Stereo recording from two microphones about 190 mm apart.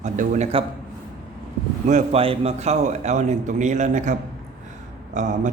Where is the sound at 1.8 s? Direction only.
35° right (ahead or behind).